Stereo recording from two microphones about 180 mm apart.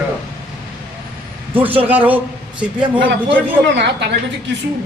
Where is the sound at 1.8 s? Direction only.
10° right (ahead or behind).